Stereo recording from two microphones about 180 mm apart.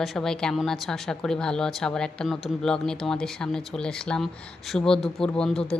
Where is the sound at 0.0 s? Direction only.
Centre (ahead or behind).